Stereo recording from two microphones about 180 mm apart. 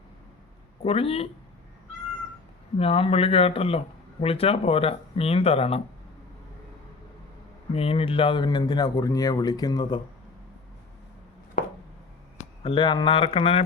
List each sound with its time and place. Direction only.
0.8 s speech: 35° left (ahead or behind)
2.7 s speech: 35° left (ahead or behind)
7.7 s speech: 30° left (ahead or behind)
12.6 s speech: 30° left (ahead or behind)